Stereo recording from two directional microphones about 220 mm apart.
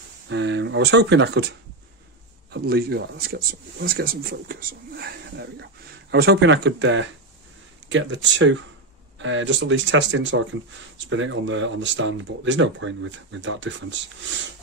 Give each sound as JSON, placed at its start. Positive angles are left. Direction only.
{"t": 0.3, "sound": "speech", "side_deg": -55}
{"t": 2.5, "sound": "speech", "side_deg": -45}